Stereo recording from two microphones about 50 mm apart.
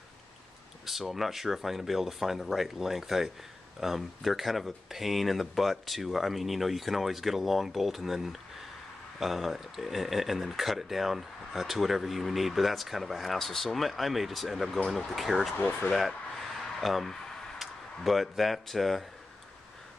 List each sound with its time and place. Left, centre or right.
0.8 s speech: centre
15.5 s speech: left
15.9 s speech: centre
16.6 s a sound: centre